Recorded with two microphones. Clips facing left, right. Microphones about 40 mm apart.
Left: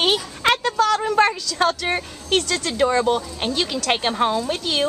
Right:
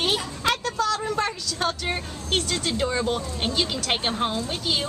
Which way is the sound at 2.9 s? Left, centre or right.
Left.